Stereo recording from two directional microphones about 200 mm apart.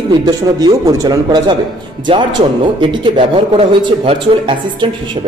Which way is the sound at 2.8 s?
25° right (ahead or behind).